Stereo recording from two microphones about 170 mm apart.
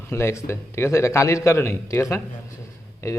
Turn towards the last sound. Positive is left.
turn(degrees=15)  # may be behind; listen again after turning